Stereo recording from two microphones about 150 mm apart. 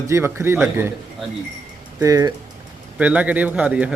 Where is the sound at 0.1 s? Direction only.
15° right (ahead or behind).